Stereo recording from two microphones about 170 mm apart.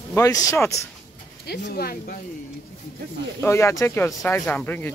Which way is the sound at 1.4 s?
70° left (ahead or behind).